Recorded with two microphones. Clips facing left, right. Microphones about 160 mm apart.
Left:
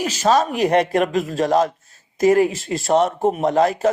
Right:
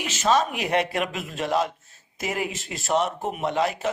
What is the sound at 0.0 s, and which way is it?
A man's voice, 40° left (ahead or behind).